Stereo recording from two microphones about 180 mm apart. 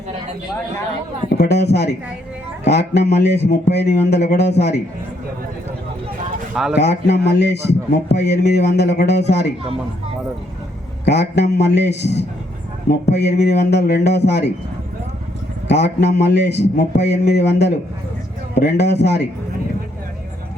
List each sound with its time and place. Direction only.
1.3 s a man's voice: 65° left (ahead or behind)
6.5 s speech: 5° right (ahead or behind)
6.7 s a man's voice: 70° left (ahead or behind)
11.0 s a man's voice: 70° left (ahead or behind)
15.7 s a man's voice: 65° left (ahead or behind)